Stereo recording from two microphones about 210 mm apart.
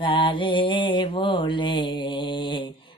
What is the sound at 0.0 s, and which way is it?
Mantra, 25° left (ahead or behind).